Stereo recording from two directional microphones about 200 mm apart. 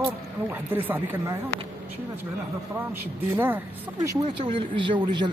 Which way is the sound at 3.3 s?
10° right (ahead or behind).